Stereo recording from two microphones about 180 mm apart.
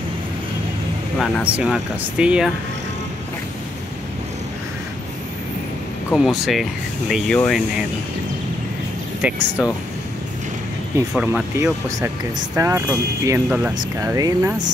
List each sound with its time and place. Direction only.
1.1 s speech: 5° right (ahead or behind)
6.1 s speech: centre (ahead or behind)
9.2 s speech: 5° right (ahead or behind)
11.0 s speech: 10° right (ahead or behind)